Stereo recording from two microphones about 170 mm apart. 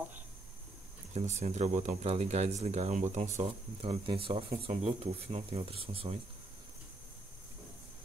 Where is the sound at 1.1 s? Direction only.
40° right (ahead or behind).